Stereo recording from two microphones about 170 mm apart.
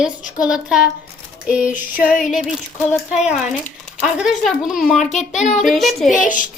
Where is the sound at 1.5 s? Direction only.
5° right (ahead or behind).